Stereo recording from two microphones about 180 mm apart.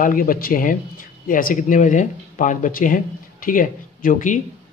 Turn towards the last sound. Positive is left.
turn(degrees=45)  # may be behind; listen again after turning